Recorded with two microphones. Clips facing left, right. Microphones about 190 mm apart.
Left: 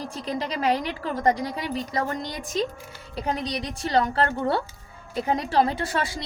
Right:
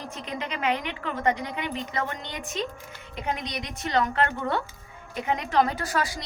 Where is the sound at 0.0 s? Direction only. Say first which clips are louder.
Left 4 dB; 35° left (ahead or behind).